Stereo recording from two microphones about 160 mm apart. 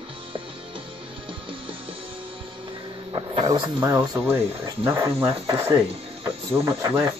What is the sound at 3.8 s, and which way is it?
Speech, 15° right (ahead or behind).